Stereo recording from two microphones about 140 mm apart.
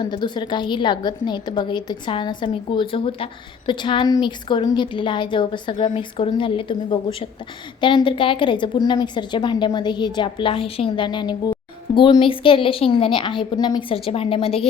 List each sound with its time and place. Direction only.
0.0 s a woman's voice: 30° left (ahead or behind)
5.7 s a woman's voice: 55° left (ahead or behind)
6.0 s a woman's voice: 40° left (ahead or behind)